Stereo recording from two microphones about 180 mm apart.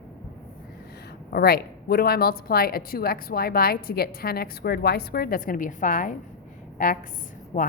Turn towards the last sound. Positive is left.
turn(degrees=45)  # may be behind; listen again after turning